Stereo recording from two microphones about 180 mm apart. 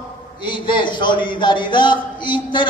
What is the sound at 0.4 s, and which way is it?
A man's voice, 25° left (ahead or behind).